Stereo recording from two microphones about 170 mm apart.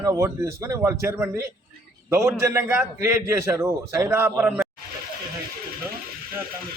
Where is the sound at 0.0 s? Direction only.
20° right (ahead or behind).